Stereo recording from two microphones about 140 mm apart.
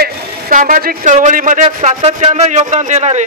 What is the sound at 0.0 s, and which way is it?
Speech, 75° right (ahead or behind).